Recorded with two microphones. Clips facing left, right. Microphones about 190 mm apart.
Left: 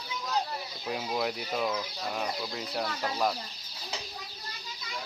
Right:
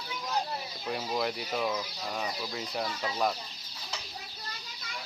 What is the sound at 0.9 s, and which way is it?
Speech, centre (ahead or behind).